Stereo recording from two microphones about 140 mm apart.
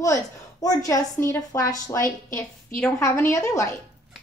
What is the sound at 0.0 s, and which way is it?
A woman's voice, 25° left (ahead or behind).